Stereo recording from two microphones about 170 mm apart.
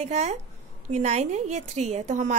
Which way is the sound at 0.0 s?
40° right (ahead or behind).